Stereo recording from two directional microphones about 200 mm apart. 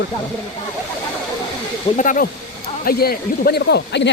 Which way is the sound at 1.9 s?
45° left (ahead or behind).